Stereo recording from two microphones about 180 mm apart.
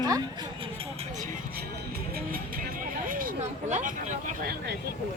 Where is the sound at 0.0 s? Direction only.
20° right (ahead or behind); by 1.3 s 40° right (ahead or behind).